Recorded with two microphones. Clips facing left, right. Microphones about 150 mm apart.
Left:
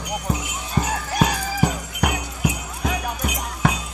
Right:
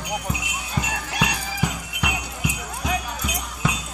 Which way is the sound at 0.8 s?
40° left (ahead or behind).